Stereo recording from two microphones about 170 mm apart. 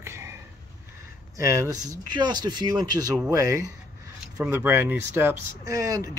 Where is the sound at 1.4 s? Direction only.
20° right (ahead or behind).